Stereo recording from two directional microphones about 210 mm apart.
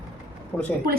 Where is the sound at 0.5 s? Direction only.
10° left (ahead or behind).